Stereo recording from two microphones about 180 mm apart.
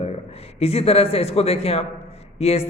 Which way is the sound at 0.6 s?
35° left (ahead or behind).